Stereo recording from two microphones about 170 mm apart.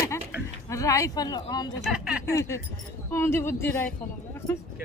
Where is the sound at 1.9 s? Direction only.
5° right (ahead or behind).